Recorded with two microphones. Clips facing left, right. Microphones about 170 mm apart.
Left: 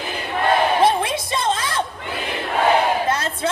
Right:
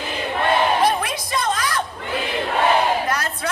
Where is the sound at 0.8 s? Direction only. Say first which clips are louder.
Left 2 dB; 25° left (ahead or behind).